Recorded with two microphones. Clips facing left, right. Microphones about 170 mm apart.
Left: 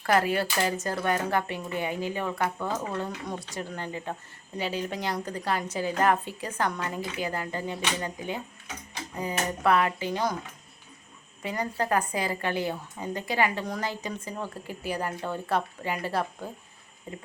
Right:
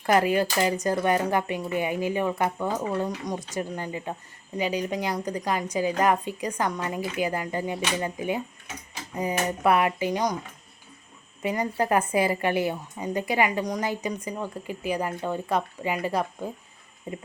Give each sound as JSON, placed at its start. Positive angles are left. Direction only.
{"t": 0.0, "sound": "a woman's voice", "side_deg": -20}
{"t": 11.4, "sound": "a woman's voice", "side_deg": -20}
{"t": 14.3, "sound": "a woman's voice", "side_deg": -5}
{"t": 17.1, "sound": "a woman's voice", "side_deg": -20}